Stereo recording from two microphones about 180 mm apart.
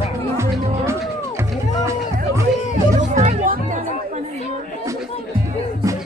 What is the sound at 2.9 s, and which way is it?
Music, 40° right (ahead or behind).